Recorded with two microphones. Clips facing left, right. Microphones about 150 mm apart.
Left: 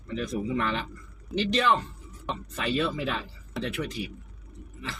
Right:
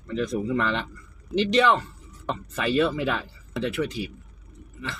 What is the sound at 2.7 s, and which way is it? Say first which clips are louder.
Speech: right 6 dB; 75° right (ahead or behind).